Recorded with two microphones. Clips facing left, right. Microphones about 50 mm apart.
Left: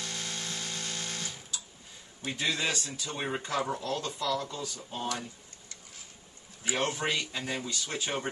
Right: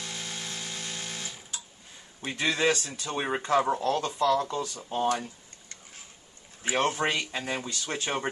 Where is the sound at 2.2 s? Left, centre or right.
Right.